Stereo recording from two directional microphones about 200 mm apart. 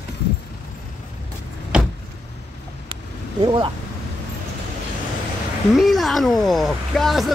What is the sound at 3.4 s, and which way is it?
Speech, 25° right (ahead or behind).